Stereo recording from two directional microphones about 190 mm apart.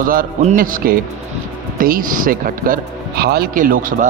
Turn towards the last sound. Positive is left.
turn(degrees=-45)  # may be behind; listen again after turning